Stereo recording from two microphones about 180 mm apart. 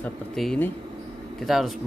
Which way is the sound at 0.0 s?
5° left (ahead or behind).